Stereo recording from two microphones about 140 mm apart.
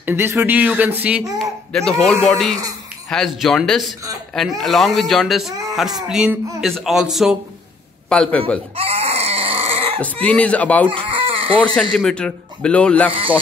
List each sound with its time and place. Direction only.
0.0 s speech: 15° right (ahead or behind)
1.7 s speech: 5° left (ahead or behind)
8.1 s a man's voice: 5° left (ahead or behind)
8.7 s a sound: 45° right (ahead or behind)
10.2 s a man's voice: 10° left (ahead or behind)
10.9 s chicken: 40° right (ahead or behind)
11.6 s a man's voice: 5° left (ahead or behind)
13.1 s speech: 40° right (ahead or behind)